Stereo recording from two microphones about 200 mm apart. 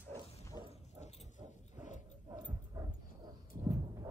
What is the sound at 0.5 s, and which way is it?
Dog, 20° right (ahead or behind).